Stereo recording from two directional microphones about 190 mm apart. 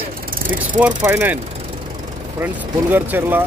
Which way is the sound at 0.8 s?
5° right (ahead or behind).